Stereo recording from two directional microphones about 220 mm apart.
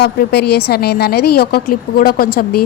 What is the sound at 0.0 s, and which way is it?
A woman's voice, 45° left (ahead or behind).